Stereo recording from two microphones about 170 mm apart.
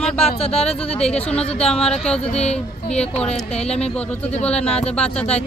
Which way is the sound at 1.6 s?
5° left (ahead or behind).